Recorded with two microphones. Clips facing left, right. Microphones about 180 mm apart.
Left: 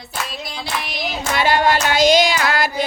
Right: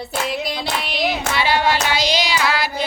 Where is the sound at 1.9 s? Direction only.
50° left (ahead or behind).